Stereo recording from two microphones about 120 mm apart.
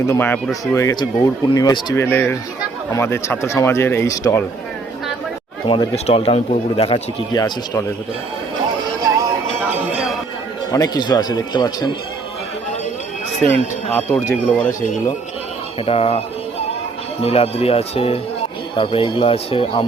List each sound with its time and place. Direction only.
0.1 s a man's voice: 15° left (ahead or behind)
2.0 s a man's voice: 20° left (ahead or behind)
5.6 s speech: 45° left (ahead or behind)
6.1 s speech: 55° left (ahead or behind)
7.3 s speech: 35° left (ahead or behind)
9.6 s a sound: 5° right (ahead or behind)
10.7 s speech: 30° left (ahead or behind)
13.9 s a man's voice: 15° left (ahead or behind)
15.9 s speech: 55° left (ahead or behind)